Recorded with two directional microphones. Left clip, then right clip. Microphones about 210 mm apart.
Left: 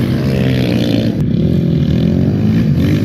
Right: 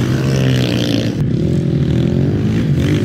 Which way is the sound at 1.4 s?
15° right (ahead or behind).